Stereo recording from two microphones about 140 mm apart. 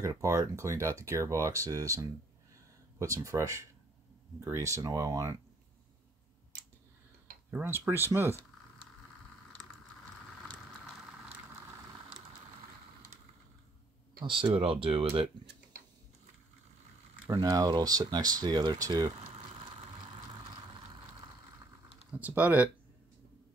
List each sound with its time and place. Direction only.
0.0 s speech: 20° right (ahead or behind)
7.5 s speech: 15° right (ahead or behind)
14.2 s speech: 40° right (ahead or behind)
17.3 s speech: 25° right (ahead or behind)
22.2 s speech: 10° right (ahead or behind)